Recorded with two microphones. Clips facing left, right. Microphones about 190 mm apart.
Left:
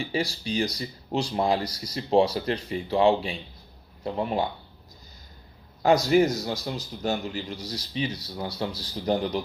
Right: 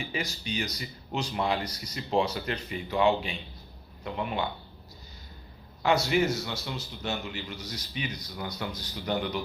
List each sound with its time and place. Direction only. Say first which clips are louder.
0.0 s speech: left 6 dB; 35° left (ahead or behind)
5.8 s speech: left 5 dB; 40° left (ahead or behind)